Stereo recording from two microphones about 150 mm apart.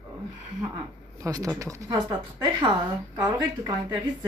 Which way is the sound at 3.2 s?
20° right (ahead or behind).